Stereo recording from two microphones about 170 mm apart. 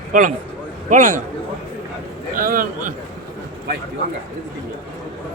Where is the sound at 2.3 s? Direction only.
55° right (ahead or behind).